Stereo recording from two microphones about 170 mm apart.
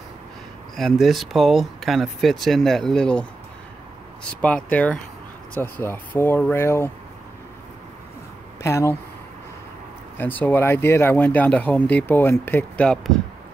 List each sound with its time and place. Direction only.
0.7 s speech: centre (ahead or behind)
8.6 s speech: 15° left (ahead or behind)
10.1 s speech: 10° left (ahead or behind)